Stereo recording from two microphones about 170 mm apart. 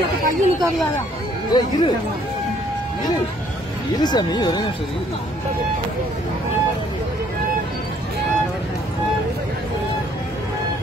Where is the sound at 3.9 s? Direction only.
25° left (ahead or behind).